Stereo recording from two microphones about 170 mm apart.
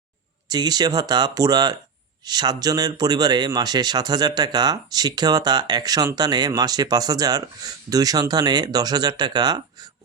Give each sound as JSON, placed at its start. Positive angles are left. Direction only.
{"t": 0.5, "sound": "speech", "side_deg": -25}